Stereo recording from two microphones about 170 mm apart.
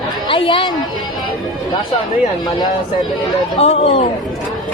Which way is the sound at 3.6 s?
35° left (ahead or behind).